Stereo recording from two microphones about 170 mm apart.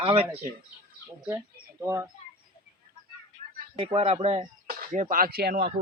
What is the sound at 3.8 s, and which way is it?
Speech, 35° right (ahead or behind).